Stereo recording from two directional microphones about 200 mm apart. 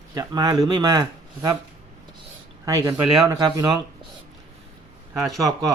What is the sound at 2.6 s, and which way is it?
Speech, 15° right (ahead or behind).